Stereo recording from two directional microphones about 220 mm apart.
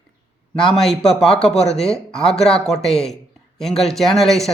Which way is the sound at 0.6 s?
Centre (ahead or behind).